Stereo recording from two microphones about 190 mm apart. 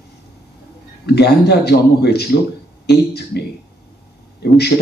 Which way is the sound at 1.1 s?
60° left (ahead or behind).